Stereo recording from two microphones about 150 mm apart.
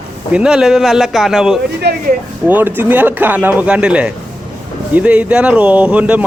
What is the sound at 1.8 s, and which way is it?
Speech, 90° right.